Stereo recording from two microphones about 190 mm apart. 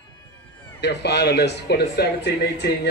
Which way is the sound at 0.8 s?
60° left (ahead or behind).